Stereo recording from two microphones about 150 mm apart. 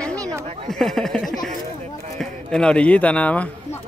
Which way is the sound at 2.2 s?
5° left (ahead or behind).